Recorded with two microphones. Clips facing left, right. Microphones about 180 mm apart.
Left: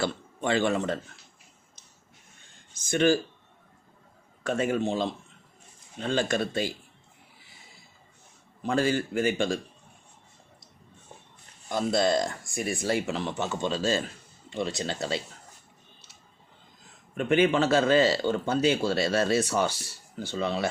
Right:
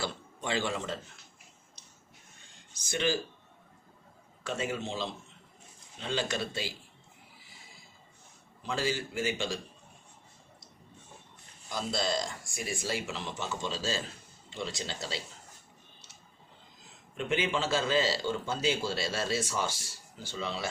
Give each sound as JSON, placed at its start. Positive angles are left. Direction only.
{"t": 0.0, "sound": "a man's voice", "side_deg": 60}
{"t": 2.7, "sound": "speech", "side_deg": 50}
{"t": 4.4, "sound": "speech", "side_deg": 55}
{"t": 8.6, "sound": "speech", "side_deg": 55}
{"t": 11.7, "sound": "speech", "side_deg": 55}
{"t": 17.2, "sound": "speech", "side_deg": 55}